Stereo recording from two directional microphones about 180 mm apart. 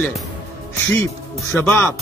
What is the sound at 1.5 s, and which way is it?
Speech, 10° left (ahead or behind).